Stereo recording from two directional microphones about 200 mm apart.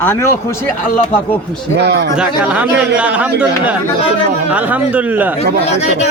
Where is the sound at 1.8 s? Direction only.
55° right (ahead or behind).